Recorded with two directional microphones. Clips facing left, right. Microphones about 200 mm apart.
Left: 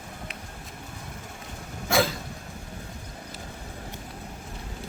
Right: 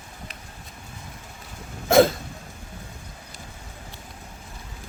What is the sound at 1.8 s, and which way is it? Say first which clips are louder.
Cough: right 8 dB; 50° right (ahead or behind).